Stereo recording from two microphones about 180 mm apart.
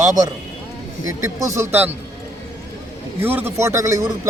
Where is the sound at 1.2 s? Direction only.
15° right (ahead or behind).